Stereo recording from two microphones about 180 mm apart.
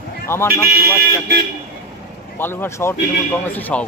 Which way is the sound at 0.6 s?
55° right (ahead or behind).